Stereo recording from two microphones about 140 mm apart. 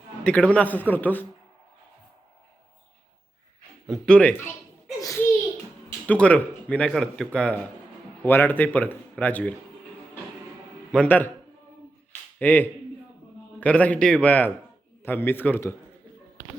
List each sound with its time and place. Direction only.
0.3 s speech: 10° left (ahead or behind)
3.8 s speech: centre (ahead or behind)
4.9 s a child's voice: 20° left (ahead or behind)
6.1 s speech: 10° left (ahead or behind)
10.9 s speech: 10° left (ahead or behind)
12.4 s speech: 10° left (ahead or behind)